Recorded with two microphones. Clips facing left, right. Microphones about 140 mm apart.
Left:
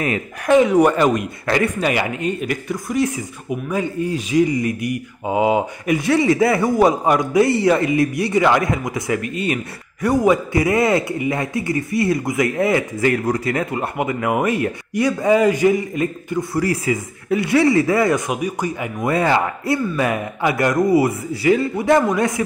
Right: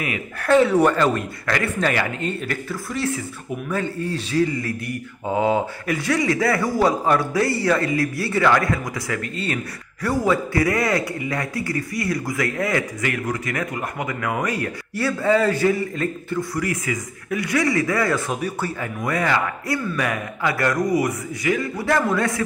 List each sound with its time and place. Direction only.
0.4 s speech: 15° left (ahead or behind)
16.5 s speech: 30° left (ahead or behind)